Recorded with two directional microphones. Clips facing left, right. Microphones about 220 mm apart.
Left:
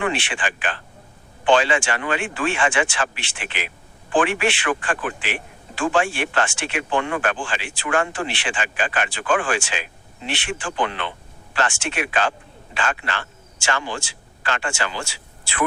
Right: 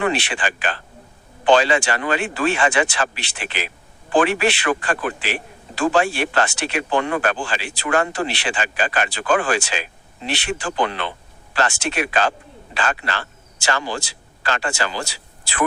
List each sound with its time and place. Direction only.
0.0 s speech: 40° right (ahead or behind)